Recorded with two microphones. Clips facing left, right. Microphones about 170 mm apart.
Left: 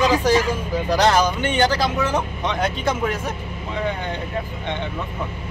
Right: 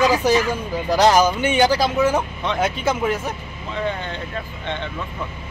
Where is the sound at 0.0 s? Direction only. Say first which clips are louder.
Even; 10° right (ahead or behind).